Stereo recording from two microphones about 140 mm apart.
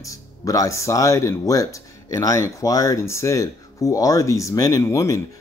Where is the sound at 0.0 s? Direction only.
25° left (ahead or behind).